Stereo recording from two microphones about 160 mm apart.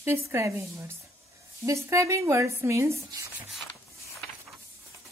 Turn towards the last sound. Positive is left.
turn(degrees=0)  # may be behind; listen again after turning